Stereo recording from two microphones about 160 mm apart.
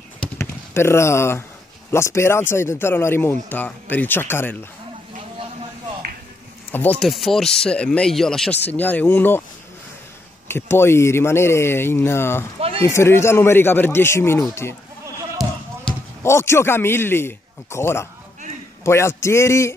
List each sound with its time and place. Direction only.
0.4 s speech: 15° left (ahead or behind)
6.7 s speech: 10° left (ahead or behind)
7.0 s speech: centre (ahead or behind)
10.5 s speech: 15° left (ahead or behind)
12.5 s a sound: 35° right (ahead or behind)
12.8 s speech: 15° left (ahead or behind)
15.4 s basketball bounce: centre (ahead or behind)
16.2 s speech: 15° left (ahead or behind)